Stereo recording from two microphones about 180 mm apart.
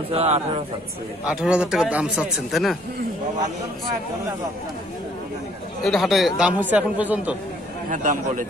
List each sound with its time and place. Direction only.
0.1 s a man's voice: 40° right (ahead or behind)
1.3 s speech: 5° right (ahead or behind)
5.9 s speech: centre (ahead or behind)
7.9 s a man's voice: 45° right (ahead or behind)